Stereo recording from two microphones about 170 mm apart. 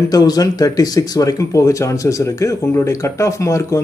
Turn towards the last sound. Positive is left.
turn(degrees=15)  # may be behind; listen again after turning